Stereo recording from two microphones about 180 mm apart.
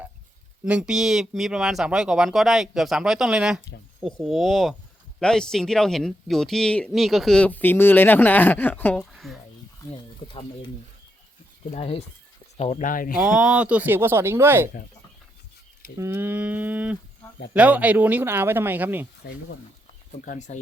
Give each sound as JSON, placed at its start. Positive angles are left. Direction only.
{"t": 0.6, "sound": "speech", "side_deg": -5}
{"t": 11.7, "sound": "speech", "side_deg": 35}
{"t": 13.1, "sound": "speech", "side_deg": -5}
{"t": 16.0, "sound": "speech", "side_deg": -15}
{"t": 19.2, "sound": "speech", "side_deg": 65}
{"t": 20.2, "sound": "speech", "side_deg": 45}